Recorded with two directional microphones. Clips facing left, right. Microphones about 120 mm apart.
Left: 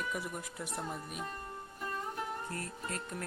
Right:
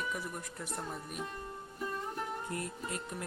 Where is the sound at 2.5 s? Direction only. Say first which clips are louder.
Right 2 dB; 20° right (ahead or behind).